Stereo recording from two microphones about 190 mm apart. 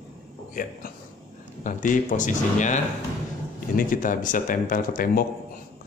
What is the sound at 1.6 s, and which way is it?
Speech, 45° left (ahead or behind).